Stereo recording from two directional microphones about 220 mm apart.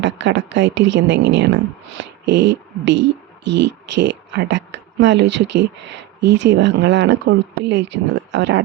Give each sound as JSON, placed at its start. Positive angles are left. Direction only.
{"t": 0.0, "sound": "a woman's voice", "side_deg": -55}